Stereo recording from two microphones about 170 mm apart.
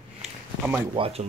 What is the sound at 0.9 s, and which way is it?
Speech, 35° right (ahead or behind).